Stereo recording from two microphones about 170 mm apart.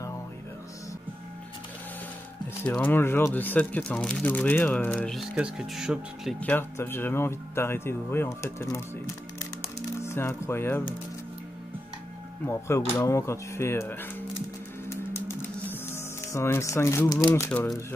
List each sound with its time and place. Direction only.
2.6 s speech: 10° left (ahead or behind)
6.4 s speech: 10° left (ahead or behind)
12.4 s speech: 15° left (ahead or behind)
14.9 s music: 15° left (ahead or behind)
17.5 s speech: 10° left (ahead or behind)